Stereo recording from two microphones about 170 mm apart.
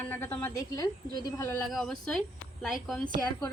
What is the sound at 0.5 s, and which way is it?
A woman's voice, 20° left (ahead or behind).